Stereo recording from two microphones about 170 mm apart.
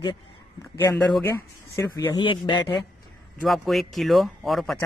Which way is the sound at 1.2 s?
15° left (ahead or behind).